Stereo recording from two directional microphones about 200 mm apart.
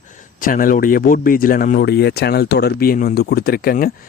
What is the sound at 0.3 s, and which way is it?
Speech, 45° left (ahead or behind).